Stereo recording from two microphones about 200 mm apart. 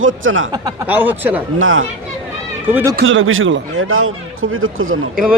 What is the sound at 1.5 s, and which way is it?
Speech, 80° right.